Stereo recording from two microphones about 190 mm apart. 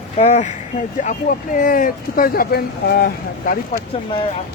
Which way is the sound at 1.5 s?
45° left (ahead or behind).